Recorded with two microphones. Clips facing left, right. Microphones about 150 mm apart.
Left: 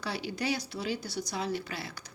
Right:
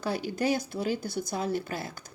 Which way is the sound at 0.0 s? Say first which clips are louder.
Right 5 dB; 45° right (ahead or behind).